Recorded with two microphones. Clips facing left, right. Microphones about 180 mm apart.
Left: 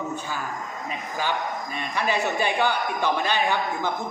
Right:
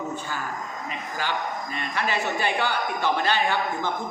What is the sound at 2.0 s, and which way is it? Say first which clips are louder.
A man's voice: left 2 dB; 15° left (ahead or behind).